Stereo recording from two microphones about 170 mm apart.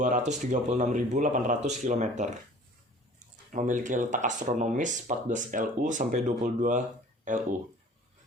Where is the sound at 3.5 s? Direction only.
45° right (ahead or behind).